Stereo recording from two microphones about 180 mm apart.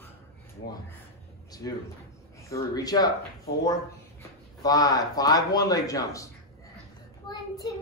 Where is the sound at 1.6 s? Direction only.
20° left (ahead or behind).